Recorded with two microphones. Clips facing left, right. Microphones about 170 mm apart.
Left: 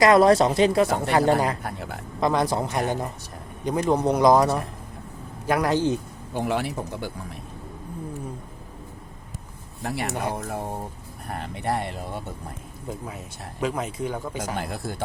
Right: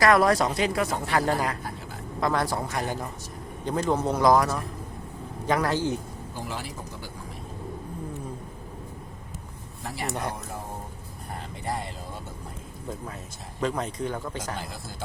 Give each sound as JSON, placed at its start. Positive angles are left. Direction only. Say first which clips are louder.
{"t": 0.0, "sound": "a man's voice", "louder": "left 4 dB", "side_deg": 25}
{"t": 5.5, "sound": "a man's voice", "louder": "left 3 dB", "side_deg": 15}
{"t": 6.3, "sound": "speech", "louder": "left 11 dB", "side_deg": 65}
{"t": 9.8, "sound": "speech", "louder": "left 5 dB", "side_deg": 65}
{"t": 10.1, "sound": "a man's voice", "louder": "even", "side_deg": 5}
{"t": 11.3, "sound": "music", "louder": "left 5 dB", "side_deg": 65}
{"t": 13.6, "sound": "a man's voice", "louder": "left 1 dB", "side_deg": 10}
{"t": 14.6, "sound": "speech", "louder": "left 7 dB", "side_deg": 60}